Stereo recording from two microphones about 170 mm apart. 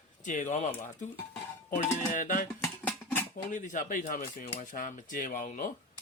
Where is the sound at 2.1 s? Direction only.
50° left (ahead or behind).